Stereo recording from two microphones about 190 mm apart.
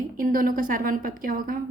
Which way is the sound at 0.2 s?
45° right (ahead or behind).